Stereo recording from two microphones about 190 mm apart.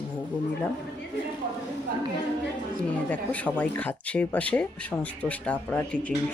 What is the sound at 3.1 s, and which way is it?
Speech, 10° left (ahead or behind).